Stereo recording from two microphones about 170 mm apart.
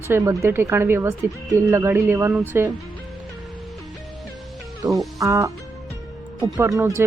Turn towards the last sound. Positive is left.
turn(degrees=-20)  # may be behind; listen again after turning